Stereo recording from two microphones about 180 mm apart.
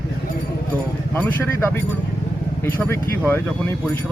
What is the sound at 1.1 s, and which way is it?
Speech, 10° left (ahead or behind).